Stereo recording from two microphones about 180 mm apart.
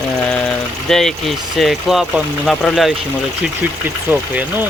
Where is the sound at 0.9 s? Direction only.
Centre (ahead or behind).